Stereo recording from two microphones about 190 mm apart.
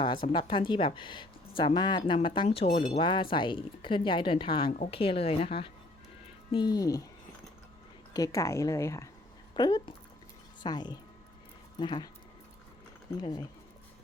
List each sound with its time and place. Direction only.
0.3 s a woman's voice: 25° left (ahead or behind)
8.1 s speech: 15° left (ahead or behind)
13.1 s speech: 20° left (ahead or behind)